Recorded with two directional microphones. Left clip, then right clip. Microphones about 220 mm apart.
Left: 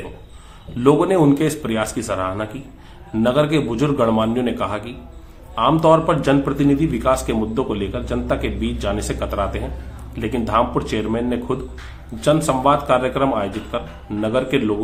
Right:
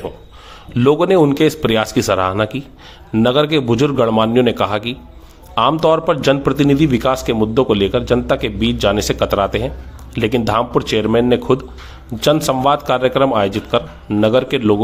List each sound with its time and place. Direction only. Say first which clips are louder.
0.8 s a man's voice: right 3 dB; 40° right (ahead or behind)